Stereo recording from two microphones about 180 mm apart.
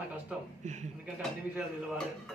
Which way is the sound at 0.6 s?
40° right (ahead or behind).